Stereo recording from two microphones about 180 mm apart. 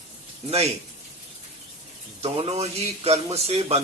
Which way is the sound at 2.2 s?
30° right (ahead or behind).